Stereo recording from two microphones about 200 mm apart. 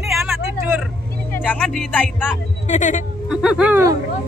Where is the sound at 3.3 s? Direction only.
5° right (ahead or behind).